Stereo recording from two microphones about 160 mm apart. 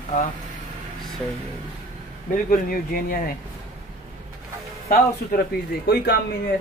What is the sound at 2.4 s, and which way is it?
Speech, 65° left (ahead or behind).